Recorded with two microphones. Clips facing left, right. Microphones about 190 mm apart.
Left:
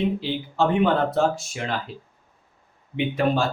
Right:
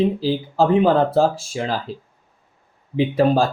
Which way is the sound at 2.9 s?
35° right (ahead or behind).